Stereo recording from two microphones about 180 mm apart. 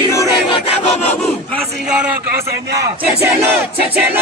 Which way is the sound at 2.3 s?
60° right (ahead or behind).